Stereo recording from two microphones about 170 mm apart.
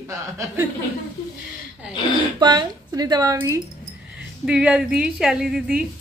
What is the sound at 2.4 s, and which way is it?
Speech, 25° right (ahead or behind).